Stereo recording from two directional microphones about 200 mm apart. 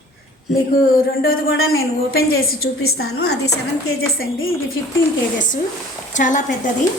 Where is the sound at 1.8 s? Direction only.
50° left (ahead or behind).